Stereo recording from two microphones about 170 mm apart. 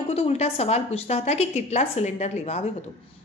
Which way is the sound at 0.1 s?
40° left (ahead or behind).